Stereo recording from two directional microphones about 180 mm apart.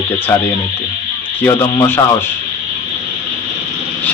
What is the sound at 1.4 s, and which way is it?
Speech, 15° left (ahead or behind).